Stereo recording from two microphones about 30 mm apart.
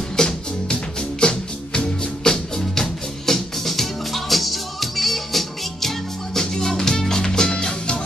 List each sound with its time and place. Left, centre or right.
0.2 s music: left
1.2 s music: left
2.2 s music: centre